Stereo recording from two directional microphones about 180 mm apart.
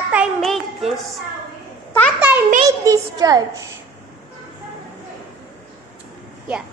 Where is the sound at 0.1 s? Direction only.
5° right (ahead or behind).